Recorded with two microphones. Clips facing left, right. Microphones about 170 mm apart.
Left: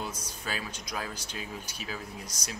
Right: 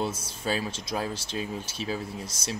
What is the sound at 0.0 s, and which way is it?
Speech, 30° right (ahead or behind).